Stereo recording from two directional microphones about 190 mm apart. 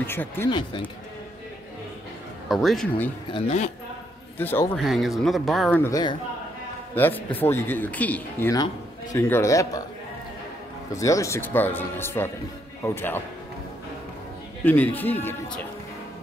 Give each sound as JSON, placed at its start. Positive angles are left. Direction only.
{"t": 0.0, "sound": "speech", "side_deg": 10}
{"t": 0.5, "sound": "speech", "side_deg": 25}
{"t": 2.4, "sound": "speech", "side_deg": 0}
{"t": 3.3, "sound": "a man's voice", "side_deg": 30}
{"t": 4.4, "sound": "speech", "side_deg": 10}
{"t": 4.8, "sound": "speech", "side_deg": 0}
{"t": 5.8, "sound": "speech", "side_deg": 20}
{"t": 10.9, "sound": "speech", "side_deg": 15}
{"t": 14.6, "sound": "speech", "side_deg": 10}